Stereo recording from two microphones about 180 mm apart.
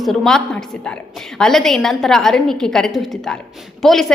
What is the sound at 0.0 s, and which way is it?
A woman's voice, centre (ahead or behind).